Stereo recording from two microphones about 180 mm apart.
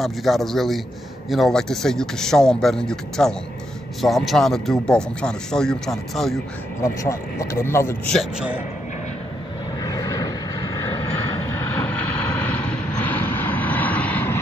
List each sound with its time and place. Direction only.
0.0 s speech: centre (ahead or behind)
6.8 s speech: 15° left (ahead or behind)
8.1 s speech: centre (ahead or behind)
9.8 s vehicle: 20° left (ahead or behind)
11.4 s vehicle: 10° left (ahead or behind)